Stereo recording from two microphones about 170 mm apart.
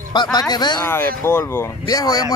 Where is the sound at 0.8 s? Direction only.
15° left (ahead or behind).